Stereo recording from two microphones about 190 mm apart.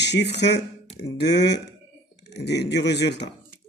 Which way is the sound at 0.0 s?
65° left (ahead or behind).